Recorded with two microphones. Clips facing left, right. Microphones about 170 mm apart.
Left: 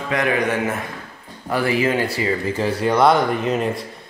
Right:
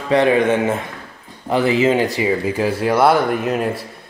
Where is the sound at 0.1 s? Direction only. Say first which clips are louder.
Right 6 dB; 30° right (ahead or behind).